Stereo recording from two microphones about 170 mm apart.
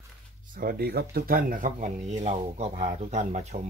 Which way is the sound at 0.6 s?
65° right (ahead or behind).